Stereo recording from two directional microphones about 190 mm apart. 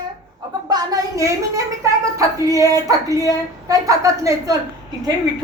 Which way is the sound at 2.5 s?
15° right (ahead or behind).